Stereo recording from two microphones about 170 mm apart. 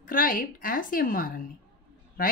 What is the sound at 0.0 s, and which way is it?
A woman's voice, 55° left (ahead or behind).